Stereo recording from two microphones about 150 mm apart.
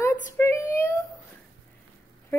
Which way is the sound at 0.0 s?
15° left (ahead or behind).